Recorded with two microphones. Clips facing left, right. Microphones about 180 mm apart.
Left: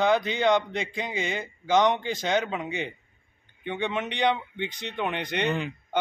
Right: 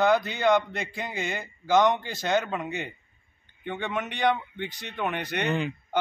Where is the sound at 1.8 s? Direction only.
15° left (ahead or behind).